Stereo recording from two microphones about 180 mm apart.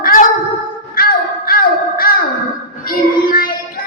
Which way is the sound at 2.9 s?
55° left (ahead or behind).